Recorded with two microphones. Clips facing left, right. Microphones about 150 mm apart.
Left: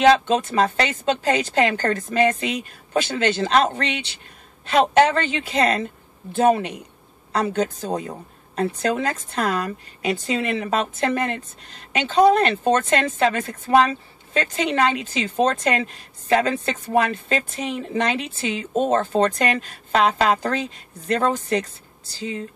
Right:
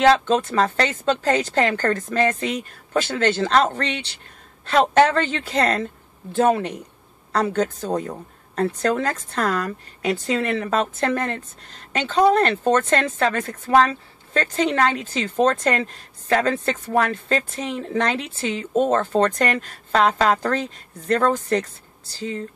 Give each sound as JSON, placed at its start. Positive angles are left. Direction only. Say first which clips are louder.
{"t": 0.1, "sound": "speech", "louder": "even", "side_deg": 15}